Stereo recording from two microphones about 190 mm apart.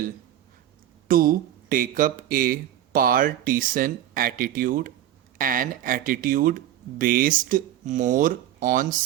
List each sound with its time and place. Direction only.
1.0 s speech: 50° right (ahead or behind)